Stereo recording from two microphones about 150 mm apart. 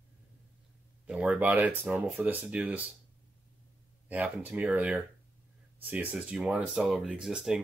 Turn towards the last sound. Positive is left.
turn(degrees=0)  # may be behind; listen again after turning